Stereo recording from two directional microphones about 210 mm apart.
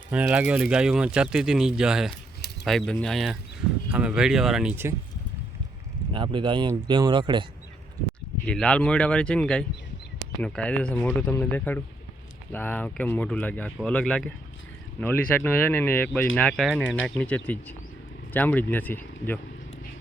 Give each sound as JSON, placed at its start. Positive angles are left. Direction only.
{"t": 0.1, "sound": "speech", "side_deg": -5}
{"t": 6.1, "sound": "speech", "side_deg": -25}
{"t": 8.4, "sound": "speech", "side_deg": 5}